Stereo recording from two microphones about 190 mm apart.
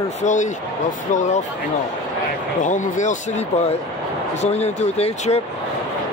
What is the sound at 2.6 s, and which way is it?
Speech, 40° left (ahead or behind).